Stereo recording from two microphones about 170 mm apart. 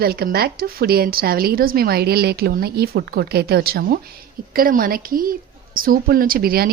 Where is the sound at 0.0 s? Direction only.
65° right (ahead or behind).